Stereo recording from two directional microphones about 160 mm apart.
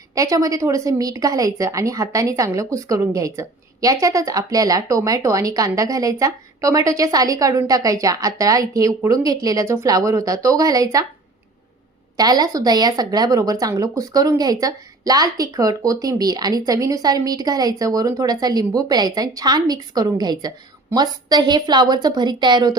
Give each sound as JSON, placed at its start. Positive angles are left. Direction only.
{"t": 0.1, "sound": "speech", "side_deg": -20}
{"t": 12.1, "sound": "speech", "side_deg": -25}